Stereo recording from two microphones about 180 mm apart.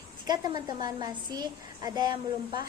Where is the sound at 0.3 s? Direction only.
25° right (ahead or behind).